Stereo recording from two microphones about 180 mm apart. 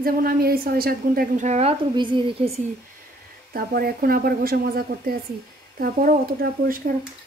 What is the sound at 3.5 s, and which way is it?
A woman's voice, 55° right (ahead or behind).